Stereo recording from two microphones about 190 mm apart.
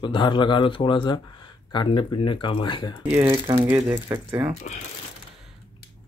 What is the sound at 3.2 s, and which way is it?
Speech, 25° right (ahead or behind).